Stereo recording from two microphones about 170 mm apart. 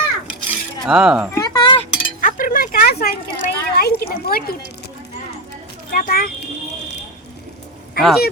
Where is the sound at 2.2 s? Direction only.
55° left (ahead or behind).